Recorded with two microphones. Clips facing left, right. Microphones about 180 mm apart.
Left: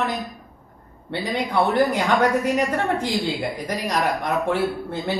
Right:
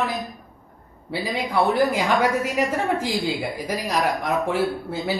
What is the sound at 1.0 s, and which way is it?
A woman's voice, 5° right (ahead or behind).